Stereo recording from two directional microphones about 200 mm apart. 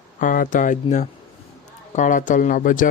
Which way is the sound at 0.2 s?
40° left (ahead or behind).